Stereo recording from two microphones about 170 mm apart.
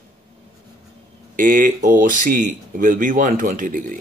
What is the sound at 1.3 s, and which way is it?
Speech, 50° right (ahead or behind).